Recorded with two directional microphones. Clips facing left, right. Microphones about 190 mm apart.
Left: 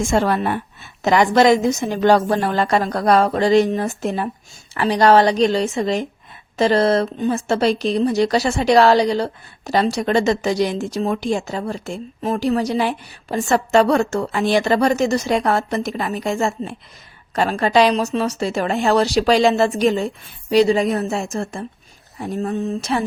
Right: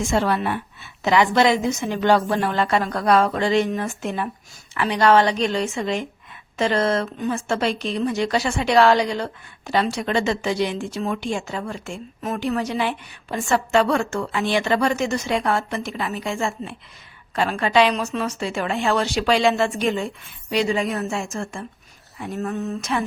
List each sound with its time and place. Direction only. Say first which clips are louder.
0.0 s speech: left 3 dB; 45° left (ahead or behind)